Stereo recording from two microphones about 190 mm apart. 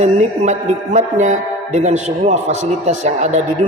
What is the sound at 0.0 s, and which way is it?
Speech, 35° right (ahead or behind).